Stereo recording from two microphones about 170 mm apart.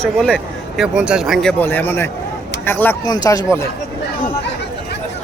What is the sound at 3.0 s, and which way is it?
Speech, 25° left (ahead or behind).